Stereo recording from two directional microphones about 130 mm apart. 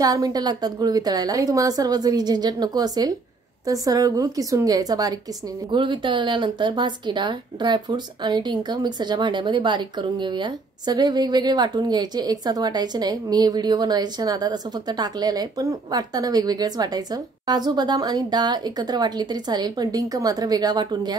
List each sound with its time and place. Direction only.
0.0 s a woman's voice: 30° right (ahead or behind)